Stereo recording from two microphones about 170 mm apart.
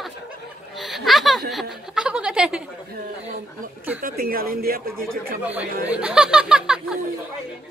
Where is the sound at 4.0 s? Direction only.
60° right (ahead or behind).